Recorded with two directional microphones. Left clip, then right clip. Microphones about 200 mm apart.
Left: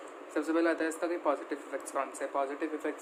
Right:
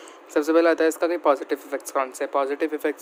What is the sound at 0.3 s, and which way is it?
Speech, 55° right (ahead or behind).